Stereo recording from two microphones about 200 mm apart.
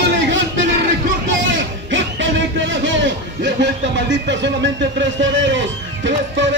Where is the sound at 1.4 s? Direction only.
65° right (ahead or behind).